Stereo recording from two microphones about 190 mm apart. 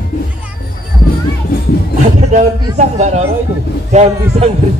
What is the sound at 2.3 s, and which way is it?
A man's voice, 40° right (ahead or behind).